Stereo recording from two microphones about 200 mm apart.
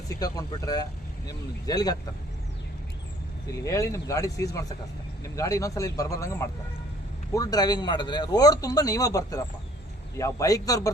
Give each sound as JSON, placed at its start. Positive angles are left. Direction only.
{"t": 0.1, "sound": "speech", "side_deg": 20}
{"t": 3.4, "sound": "speech", "side_deg": 15}